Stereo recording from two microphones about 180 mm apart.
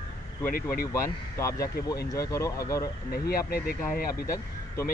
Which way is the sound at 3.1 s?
55° left (ahead or behind).